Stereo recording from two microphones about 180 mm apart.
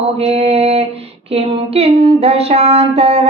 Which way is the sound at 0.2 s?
35° right (ahead or behind).